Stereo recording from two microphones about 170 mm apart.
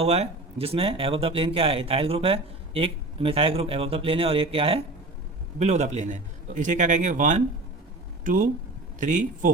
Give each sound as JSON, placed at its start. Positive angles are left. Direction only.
{"t": 0.0, "sound": "a man's voice", "side_deg": -40}